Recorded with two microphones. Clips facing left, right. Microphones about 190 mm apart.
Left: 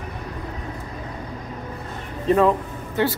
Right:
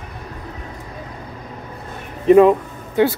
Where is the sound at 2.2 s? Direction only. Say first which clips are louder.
Right 7 dB; 15° right (ahead or behind).